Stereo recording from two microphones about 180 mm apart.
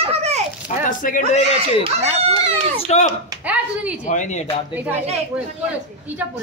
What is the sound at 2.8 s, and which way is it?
Speech, 40° left (ahead or behind).